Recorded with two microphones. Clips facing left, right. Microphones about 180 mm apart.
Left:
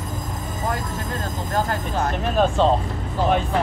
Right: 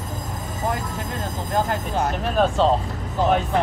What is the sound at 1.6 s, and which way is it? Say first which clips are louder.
Speech: right 1 dB; 15° right (ahead or behind).